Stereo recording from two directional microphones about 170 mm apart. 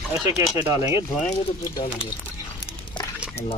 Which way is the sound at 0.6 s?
20° right (ahead or behind).